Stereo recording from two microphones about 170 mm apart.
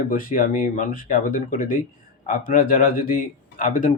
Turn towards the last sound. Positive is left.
turn(degrees=50)  # may be behind; listen again after turning